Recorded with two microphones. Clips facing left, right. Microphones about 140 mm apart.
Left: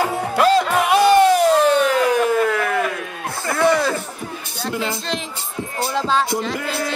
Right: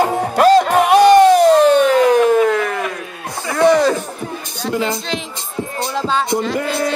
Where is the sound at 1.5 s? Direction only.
10° left (ahead or behind).